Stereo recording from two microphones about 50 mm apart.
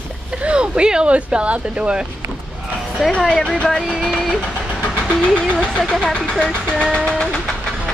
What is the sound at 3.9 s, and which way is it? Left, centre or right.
Train, centre.